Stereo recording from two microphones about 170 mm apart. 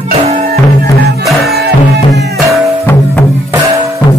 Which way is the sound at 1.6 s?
75° right (ahead or behind).